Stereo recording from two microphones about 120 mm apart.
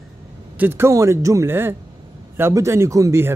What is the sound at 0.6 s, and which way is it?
Speech, 20° right (ahead or behind).